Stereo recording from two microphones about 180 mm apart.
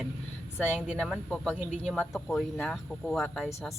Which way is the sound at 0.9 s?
5° left (ahead or behind).